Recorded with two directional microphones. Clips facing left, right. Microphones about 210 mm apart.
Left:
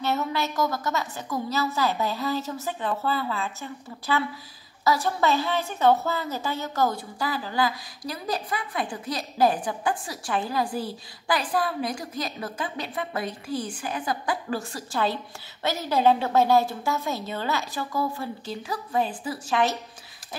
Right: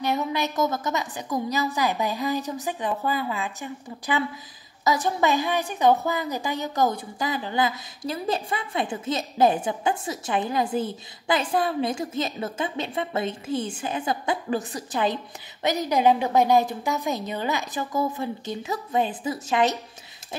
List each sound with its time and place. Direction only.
0.0 s a woman's voice: 15° right (ahead or behind)